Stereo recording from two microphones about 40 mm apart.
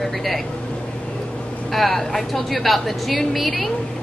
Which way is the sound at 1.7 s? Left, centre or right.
Centre.